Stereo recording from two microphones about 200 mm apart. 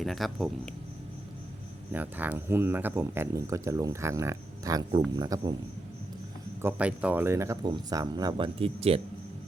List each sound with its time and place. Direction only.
0.0 s speech: centre (ahead or behind)
1.9 s speech: 10° right (ahead or behind)
6.6 s speech: 10° right (ahead or behind); by 9.0 s 30° right (ahead or behind)